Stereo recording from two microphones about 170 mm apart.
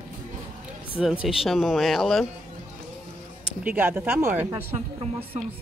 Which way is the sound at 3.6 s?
10° right (ahead or behind).